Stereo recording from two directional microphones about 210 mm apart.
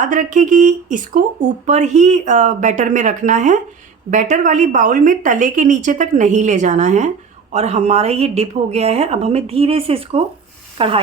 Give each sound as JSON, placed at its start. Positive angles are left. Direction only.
{"t": 0.0, "sound": "a woman's voice", "side_deg": -35}